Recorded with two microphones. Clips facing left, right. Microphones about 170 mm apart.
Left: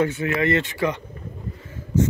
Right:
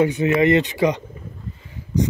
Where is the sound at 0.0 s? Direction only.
20° right (ahead or behind).